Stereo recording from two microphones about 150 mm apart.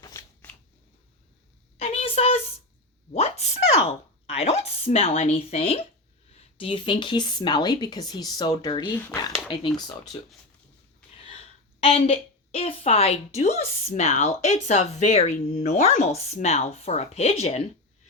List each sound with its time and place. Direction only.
0.0 s scissors: 20° left (ahead or behind)
1.8 s a sound: 40° left (ahead or behind)
3.1 s a woman's voice: 45° left (ahead or behind); by 10.2 s 25° left (ahead or behind)
11.8 s a woman's voice: 40° left (ahead or behind)